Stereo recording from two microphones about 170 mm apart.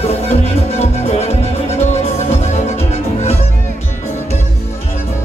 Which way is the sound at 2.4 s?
40° left (ahead or behind).